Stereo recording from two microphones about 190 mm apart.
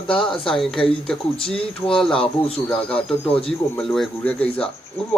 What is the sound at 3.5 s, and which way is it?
Speech, 5° left (ahead or behind).